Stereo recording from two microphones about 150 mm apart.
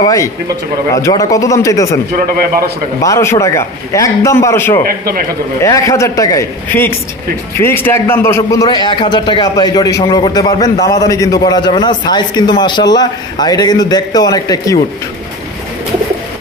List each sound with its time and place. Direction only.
0.0 s a man's voice: 20° left (ahead or behind)
3.0 s a man's voice: 20° left (ahead or behind)
4.8 s a man's voice: 75° right (ahead or behind)
5.6 s a man's voice: 20° left (ahead or behind)
8.6 s a man's voice: 30° left (ahead or behind)